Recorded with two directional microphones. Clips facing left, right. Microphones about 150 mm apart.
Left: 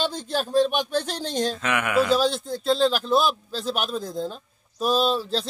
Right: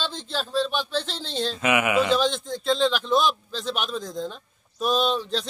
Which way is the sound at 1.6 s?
10° right (ahead or behind).